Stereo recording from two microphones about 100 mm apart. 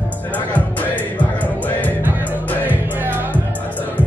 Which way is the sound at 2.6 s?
20° right (ahead or behind).